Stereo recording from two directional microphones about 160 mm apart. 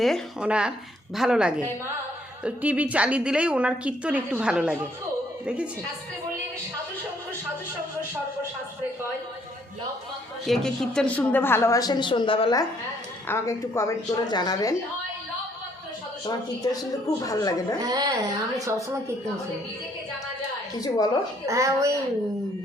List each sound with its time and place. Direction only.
0.0 s a woman's voice: 5° right (ahead or behind)
10.4 s a woman's voice: centre (ahead or behind); by 12.5 s 30° left (ahead or behind)
13.2 s a woman's voice: 15° left (ahead or behind)
17.2 s a woman's voice: 20° left (ahead or behind)
17.7 s a woman's voice: 25° right (ahead or behind)
20.8 s a woman's voice: 25° left (ahead or behind)
21.4 s a woman's voice: 20° right (ahead or behind)